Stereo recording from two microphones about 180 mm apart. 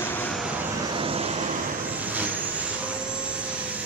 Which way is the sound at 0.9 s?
30° right (ahead or behind).